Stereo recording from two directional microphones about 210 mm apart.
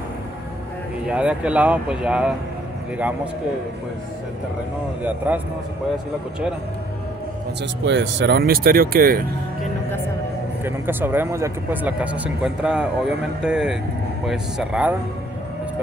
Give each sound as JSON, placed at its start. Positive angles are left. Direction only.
{"t": 1.0, "sound": "speech", "side_deg": -5}
{"t": 5.0, "sound": "speech", "side_deg": -10}
{"t": 7.8, "sound": "speech", "side_deg": -55}
{"t": 10.6, "sound": "speech", "side_deg": -10}